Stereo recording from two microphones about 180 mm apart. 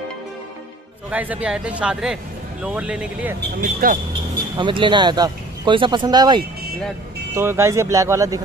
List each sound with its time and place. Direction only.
1.1 s speech: 10° right (ahead or behind)
3.3 s speech: 50° right (ahead or behind)
4.6 s speech: 25° right (ahead or behind)